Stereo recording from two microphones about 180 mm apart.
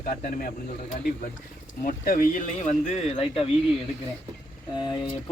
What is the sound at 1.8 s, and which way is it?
Speech, 50° left (ahead or behind).